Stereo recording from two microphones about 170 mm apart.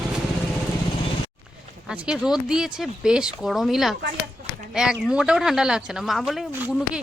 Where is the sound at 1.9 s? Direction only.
5° right (ahead or behind).